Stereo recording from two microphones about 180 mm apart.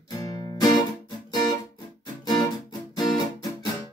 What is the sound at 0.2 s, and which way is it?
Music, 20° left (ahead or behind).